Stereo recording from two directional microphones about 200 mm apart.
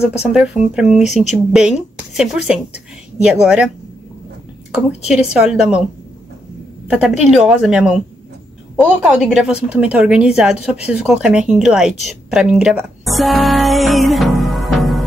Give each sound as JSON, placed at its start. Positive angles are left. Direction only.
{"t": 0.7, "sound": "a woman's voice", "side_deg": 0}
{"t": 1.0, "sound": "speech", "side_deg": 35}
{"t": 1.3, "sound": "a woman's voice", "side_deg": -5}
{"t": 4.7, "sound": "a woman's voice", "side_deg": -5}
{"t": 6.9, "sound": "a woman's voice", "side_deg": -5}